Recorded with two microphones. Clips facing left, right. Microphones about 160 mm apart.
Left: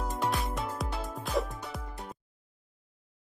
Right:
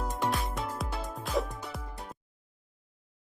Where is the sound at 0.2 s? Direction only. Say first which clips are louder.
Even; centre (ahead or behind).